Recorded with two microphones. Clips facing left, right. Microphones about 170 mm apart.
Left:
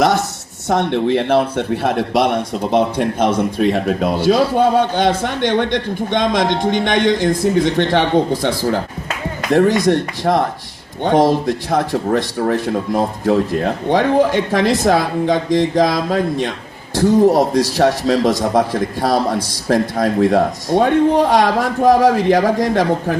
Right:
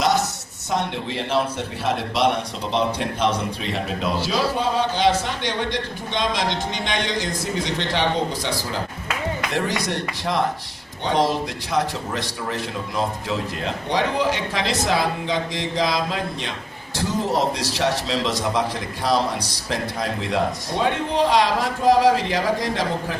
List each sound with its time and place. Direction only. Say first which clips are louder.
0.7 s a man's voice: left 10 dB; 60° left (ahead or behind)